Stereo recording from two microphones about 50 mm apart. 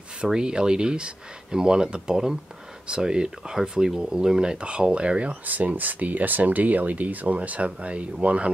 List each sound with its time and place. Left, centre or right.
0.2 s speech: centre
5.4 s speech: right